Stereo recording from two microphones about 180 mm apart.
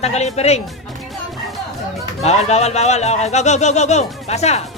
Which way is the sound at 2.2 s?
35° left (ahead or behind).